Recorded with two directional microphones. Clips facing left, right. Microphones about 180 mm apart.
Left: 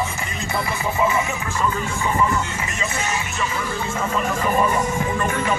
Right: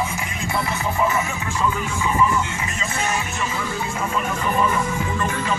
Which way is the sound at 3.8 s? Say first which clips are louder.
Left 2 dB; 10° right (ahead or behind).